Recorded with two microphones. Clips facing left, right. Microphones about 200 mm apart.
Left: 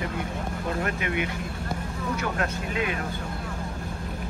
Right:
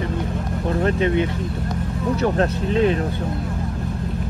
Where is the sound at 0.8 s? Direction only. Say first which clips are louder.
Right 11 dB; 30° right (ahead or behind).